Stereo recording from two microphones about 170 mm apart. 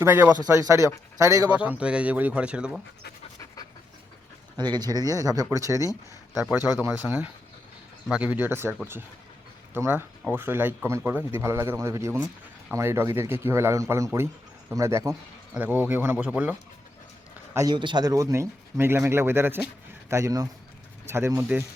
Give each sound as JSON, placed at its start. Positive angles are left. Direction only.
{"t": 0.0, "sound": "speech", "side_deg": -10}
{"t": 4.5, "sound": "a man's voice", "side_deg": -25}